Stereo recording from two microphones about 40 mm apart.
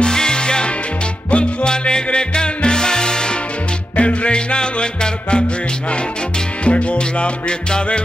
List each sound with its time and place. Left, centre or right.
0.0 s music: centre
3.9 s music: left
6.6 s music: left